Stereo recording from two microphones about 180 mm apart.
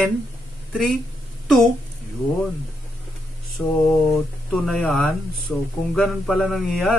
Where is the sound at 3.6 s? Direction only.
10° left (ahead or behind).